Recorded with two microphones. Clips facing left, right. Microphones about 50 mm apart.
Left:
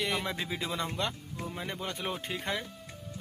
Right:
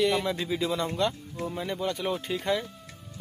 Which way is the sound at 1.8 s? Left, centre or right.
Left.